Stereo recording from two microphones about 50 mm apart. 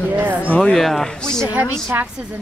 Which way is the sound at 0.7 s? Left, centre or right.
Centre.